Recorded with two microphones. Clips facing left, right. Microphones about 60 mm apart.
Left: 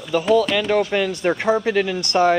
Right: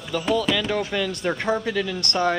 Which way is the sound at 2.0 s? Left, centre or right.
Left.